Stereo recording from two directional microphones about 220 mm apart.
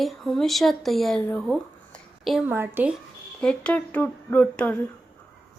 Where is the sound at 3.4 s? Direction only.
5° left (ahead or behind).